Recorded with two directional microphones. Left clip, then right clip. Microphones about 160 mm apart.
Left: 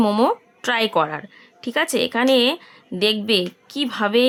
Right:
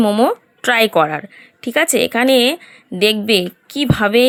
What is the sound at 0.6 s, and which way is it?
A woman's voice, 25° right (ahead or behind).